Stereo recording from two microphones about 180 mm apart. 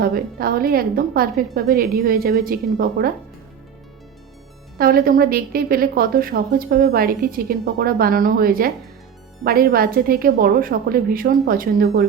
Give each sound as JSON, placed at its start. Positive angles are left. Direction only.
{"t": 0.0, "sound": "a woman's voice", "side_deg": -55}
{"t": 4.8, "sound": "a woman's voice", "side_deg": -55}